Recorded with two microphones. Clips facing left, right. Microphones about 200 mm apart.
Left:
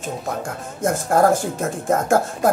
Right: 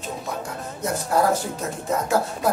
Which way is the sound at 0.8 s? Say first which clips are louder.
Left 5 dB; 50° left (ahead or behind).